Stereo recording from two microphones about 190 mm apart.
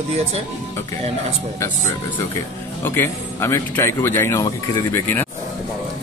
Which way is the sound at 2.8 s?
10° left (ahead or behind).